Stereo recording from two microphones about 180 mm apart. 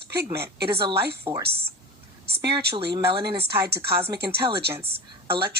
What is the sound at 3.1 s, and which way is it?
A woman's voice, 65° right (ahead or behind).